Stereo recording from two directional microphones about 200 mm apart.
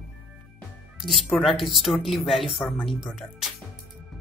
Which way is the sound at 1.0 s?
Centre (ahead or behind).